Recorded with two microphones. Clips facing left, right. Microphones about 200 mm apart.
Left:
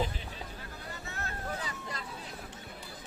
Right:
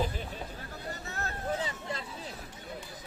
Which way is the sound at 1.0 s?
40° right (ahead or behind).